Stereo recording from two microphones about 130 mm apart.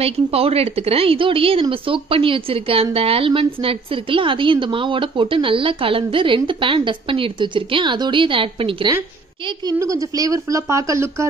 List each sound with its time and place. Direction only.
0.0 s a woman's voice: 50° right (ahead or behind)
9.7 s speech: 25° right (ahead or behind)